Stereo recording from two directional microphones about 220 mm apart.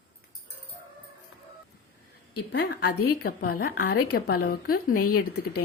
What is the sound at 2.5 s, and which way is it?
A woman's voice, 50° left (ahead or behind).